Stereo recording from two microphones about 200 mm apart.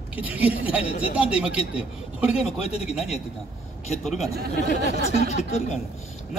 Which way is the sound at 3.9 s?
35° left (ahead or behind).